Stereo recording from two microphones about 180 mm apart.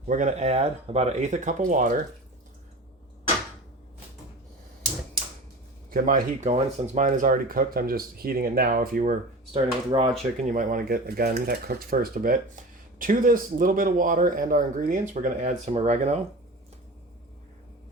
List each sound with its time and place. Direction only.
0.1 s speech: 40° right (ahead or behind)
5.9 s speech: 50° right (ahead or behind)
9.5 s speech: 30° right (ahead or behind)
10.5 s speech: 45° right (ahead or behind)